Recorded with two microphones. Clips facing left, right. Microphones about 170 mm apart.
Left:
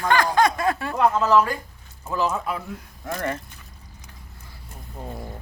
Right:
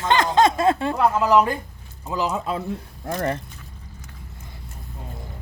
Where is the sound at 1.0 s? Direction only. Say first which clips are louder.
Even; 15° right (ahead or behind); by 3.4 s 30° right (ahead or behind).